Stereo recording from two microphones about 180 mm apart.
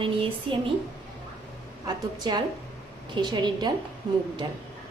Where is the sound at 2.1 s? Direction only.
25° right (ahead or behind).